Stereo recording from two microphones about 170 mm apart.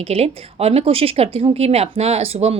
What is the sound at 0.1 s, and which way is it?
Speech, 35° right (ahead or behind).